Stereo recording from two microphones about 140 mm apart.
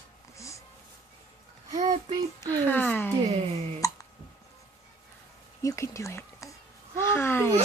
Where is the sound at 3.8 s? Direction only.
25° left (ahead or behind).